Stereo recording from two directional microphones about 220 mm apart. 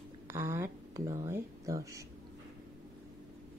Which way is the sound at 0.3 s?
10° right (ahead or behind).